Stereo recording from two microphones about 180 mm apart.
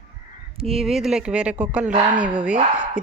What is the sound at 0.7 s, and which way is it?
Speech, centre (ahead or behind).